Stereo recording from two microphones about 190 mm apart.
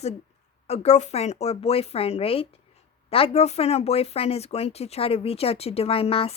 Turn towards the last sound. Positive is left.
turn(degrees=30)  # may be behind; listen again after turning